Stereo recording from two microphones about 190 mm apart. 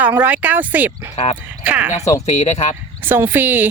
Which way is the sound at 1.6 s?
10° right (ahead or behind).